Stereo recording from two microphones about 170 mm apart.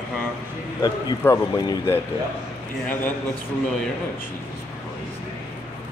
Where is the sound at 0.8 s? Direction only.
20° left (ahead or behind).